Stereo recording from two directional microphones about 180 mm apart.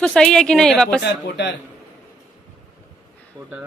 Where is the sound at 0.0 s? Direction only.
5° left (ahead or behind).